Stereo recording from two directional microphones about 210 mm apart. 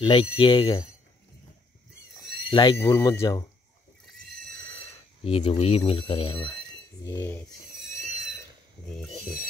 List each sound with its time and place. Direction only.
0.0 s speech: 25° left (ahead or behind)
2.5 s speech: 15° left (ahead or behind)
5.2 s speech: 25° left (ahead or behind)
7.1 s speech: 15° left (ahead or behind)
7.7 s a sound: 35° right (ahead or behind)
8.8 s speech: centre (ahead or behind)